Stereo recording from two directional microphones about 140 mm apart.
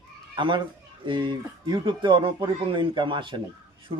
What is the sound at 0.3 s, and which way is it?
Speech, 35° right (ahead or behind).